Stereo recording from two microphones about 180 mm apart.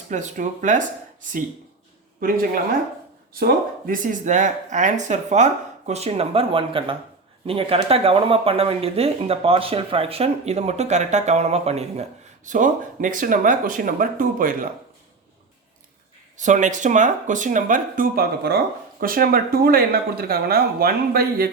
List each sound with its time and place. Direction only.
0.1 s speech: 45° right (ahead or behind)
3.3 s speech: 55° right (ahead or behind)
16.4 s speech: 45° right (ahead or behind)